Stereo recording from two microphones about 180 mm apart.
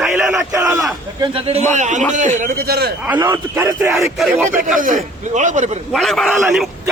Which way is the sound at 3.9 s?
Centre (ahead or behind).